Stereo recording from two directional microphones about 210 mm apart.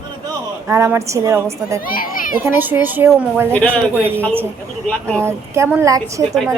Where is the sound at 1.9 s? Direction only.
40° left (ahead or behind).